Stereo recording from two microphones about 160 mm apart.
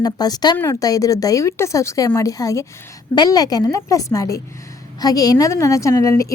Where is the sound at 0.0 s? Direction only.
25° left (ahead or behind).